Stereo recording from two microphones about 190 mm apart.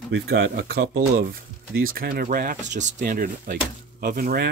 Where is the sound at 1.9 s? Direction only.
50° right (ahead or behind).